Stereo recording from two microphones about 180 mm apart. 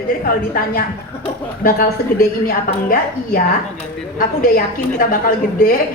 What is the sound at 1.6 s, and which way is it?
A woman's voice, 55° left (ahead or behind).